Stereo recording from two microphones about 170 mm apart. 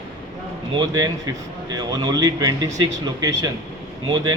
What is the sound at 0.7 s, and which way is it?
A man's voice, 25° right (ahead or behind).